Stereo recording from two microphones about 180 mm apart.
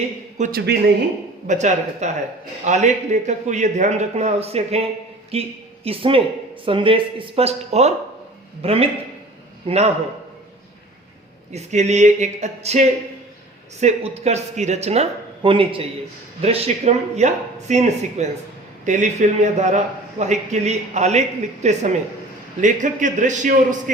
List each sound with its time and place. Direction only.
0.5 s speech: 65° right (ahead or behind)
1.5 s a man's voice: 40° right (ahead or behind)
11.5 s a man's voice: 40° right (ahead or behind)
13.8 s a man's voice: 40° right (ahead or behind)